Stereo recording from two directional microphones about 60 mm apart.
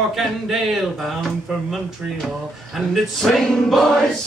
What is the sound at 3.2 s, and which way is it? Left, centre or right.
Choir, centre.